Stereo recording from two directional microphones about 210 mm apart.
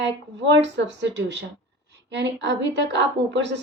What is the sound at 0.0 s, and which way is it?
A woman's voice, 60° right (ahead or behind).